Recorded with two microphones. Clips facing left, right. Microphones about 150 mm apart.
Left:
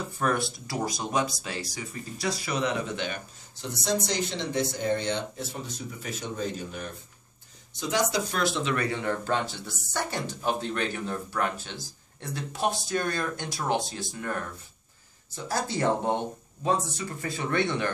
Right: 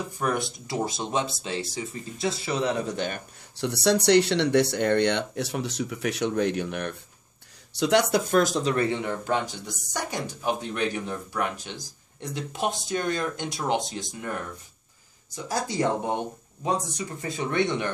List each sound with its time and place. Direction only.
0.2 s speech: 20° right (ahead or behind); by 3.2 s 40° right (ahead or behind)
3.5 s speech: 70° right (ahead or behind); by 8.7 s 40° right (ahead or behind)
9.0 s speech: 15° right (ahead or behind)
15.3 s speech: 15° right (ahead or behind)